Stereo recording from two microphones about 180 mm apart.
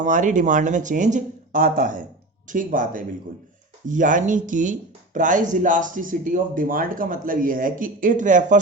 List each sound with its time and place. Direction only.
0.0 s speech: 45° right (ahead or behind)